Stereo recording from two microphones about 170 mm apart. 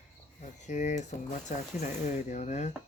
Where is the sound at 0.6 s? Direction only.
45° left (ahead or behind).